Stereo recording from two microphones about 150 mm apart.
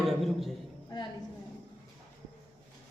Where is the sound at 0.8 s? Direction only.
30° left (ahead or behind).